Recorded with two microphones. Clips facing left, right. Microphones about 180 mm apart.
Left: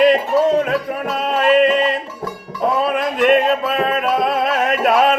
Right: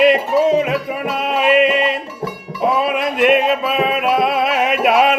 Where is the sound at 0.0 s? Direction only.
5° right (ahead or behind).